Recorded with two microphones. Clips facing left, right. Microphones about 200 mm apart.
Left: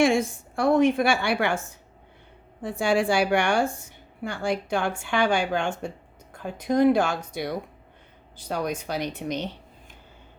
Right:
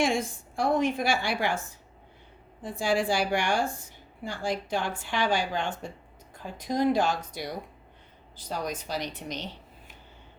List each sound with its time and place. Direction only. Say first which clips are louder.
0.2 s a woman's voice: left 4 dB; 70° left (ahead or behind)
2.6 s a woman's voice: left 4 dB; 70° left (ahead or behind)